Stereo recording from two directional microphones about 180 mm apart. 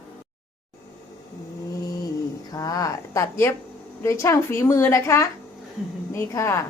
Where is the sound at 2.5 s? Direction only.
20° left (ahead or behind).